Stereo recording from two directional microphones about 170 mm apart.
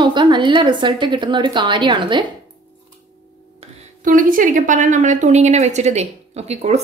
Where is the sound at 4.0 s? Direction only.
50° right (ahead or behind).